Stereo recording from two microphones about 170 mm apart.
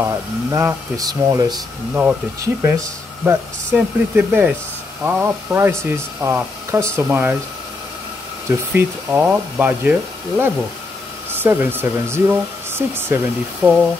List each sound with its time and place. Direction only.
0.0 s speech: 15° right (ahead or behind)
8.5 s speech: 10° right (ahead or behind)